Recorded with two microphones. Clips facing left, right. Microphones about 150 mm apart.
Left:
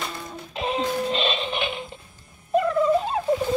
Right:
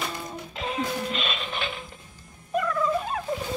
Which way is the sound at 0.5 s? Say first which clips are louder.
Left 5 dB; 20° left (ahead or behind).